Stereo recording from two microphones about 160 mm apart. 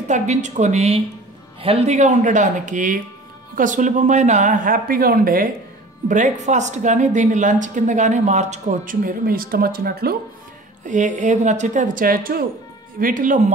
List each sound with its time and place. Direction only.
0.1 s a woman's voice: 45° right (ahead or behind); by 5.5 s 65° right (ahead or behind)
6.0 s a woman's voice: 50° right (ahead or behind); by 10.1 s 70° right (ahead or behind)
10.9 s a woman's voice: 50° right (ahead or behind); by 12.4 s 65° right (ahead or behind)
13.0 s speech: 55° right (ahead or behind)